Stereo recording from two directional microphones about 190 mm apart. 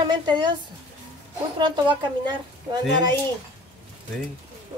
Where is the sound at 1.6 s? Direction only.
25° right (ahead or behind).